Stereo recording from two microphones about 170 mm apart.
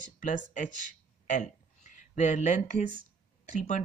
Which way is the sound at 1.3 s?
45° left (ahead or behind).